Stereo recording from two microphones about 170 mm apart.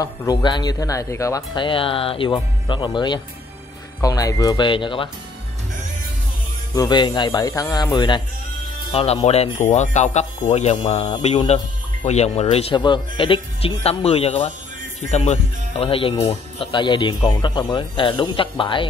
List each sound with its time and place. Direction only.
0.0 s speech: 20° left (ahead or behind)
6.7 s speech: 25° left (ahead or behind)
8.9 s speech: 35° left (ahead or behind)